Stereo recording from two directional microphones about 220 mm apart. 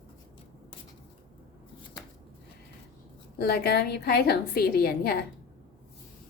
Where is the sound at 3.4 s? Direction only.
45° left (ahead or behind).